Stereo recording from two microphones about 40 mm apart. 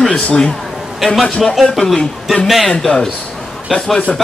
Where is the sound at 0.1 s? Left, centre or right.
Centre.